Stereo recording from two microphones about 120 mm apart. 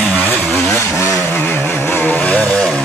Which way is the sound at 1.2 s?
15° left (ahead or behind).